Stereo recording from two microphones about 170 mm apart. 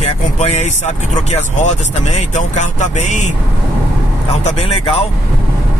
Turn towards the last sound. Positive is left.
turn(degrees=35)  # may be behind; listen again after turning